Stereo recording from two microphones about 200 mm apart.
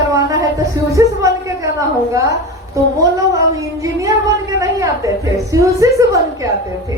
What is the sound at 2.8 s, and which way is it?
Speech, 15° right (ahead or behind).